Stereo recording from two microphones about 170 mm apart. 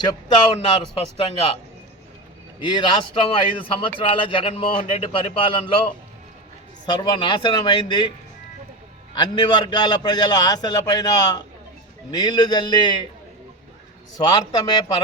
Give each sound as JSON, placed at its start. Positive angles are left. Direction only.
{"t": 0.1, "sound": "a man's voice", "side_deg": 25}
{"t": 1.1, "sound": "a man's voice", "side_deg": 35}
{"t": 2.6, "sound": "a man's voice", "side_deg": 25}
{"t": 6.8, "sound": "a man's voice", "side_deg": 25}
{"t": 9.1, "sound": "a man's voice", "side_deg": 25}
{"t": 14.3, "sound": "a man's voice", "side_deg": 20}